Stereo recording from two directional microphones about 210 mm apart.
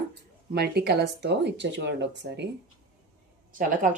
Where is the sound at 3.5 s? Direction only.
40° right (ahead or behind).